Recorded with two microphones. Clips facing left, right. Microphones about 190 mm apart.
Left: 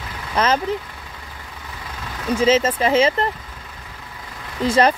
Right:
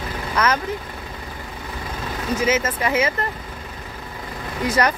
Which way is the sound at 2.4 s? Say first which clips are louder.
Left 5 dB; 30° left (ahead or behind).